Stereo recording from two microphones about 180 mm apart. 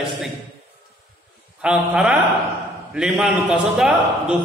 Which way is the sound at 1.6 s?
5° right (ahead or behind).